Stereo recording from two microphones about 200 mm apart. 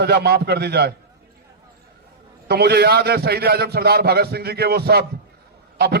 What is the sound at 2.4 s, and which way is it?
A man's voice, 55° right (ahead or behind).